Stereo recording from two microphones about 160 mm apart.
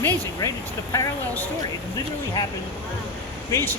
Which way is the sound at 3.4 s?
15° left (ahead or behind).